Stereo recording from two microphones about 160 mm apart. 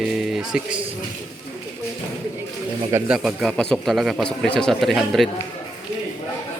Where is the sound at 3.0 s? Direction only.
Centre (ahead or behind).